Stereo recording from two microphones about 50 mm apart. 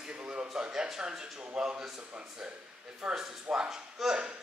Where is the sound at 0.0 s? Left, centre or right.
Centre.